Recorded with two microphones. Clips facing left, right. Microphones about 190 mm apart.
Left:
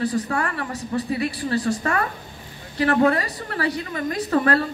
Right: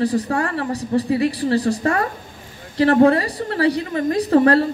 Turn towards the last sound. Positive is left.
turn(degrees=-35)  # may be behind; listen again after turning